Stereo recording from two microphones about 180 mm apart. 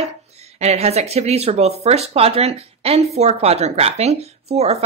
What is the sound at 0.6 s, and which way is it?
Speech, 35° right (ahead or behind).